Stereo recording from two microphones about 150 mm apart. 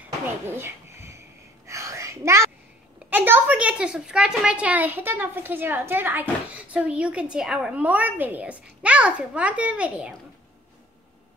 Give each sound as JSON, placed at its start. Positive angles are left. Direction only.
{"t": 0.5, "sound": "a sound", "side_deg": -15}
{"t": 1.7, "sound": "whispering", "side_deg": -20}
{"t": 3.1, "sound": "a child's voice", "side_deg": -15}